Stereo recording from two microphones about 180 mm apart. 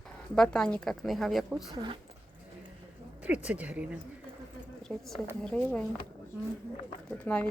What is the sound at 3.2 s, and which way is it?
A woman's voice, 5° right (ahead or behind).